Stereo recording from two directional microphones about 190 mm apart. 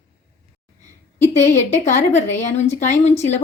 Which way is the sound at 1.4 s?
40° left (ahead or behind).